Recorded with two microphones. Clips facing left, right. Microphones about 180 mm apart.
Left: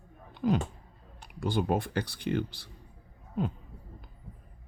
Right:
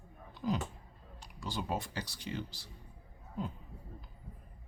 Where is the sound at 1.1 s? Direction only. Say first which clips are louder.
Left 10 dB; 55° left (ahead or behind).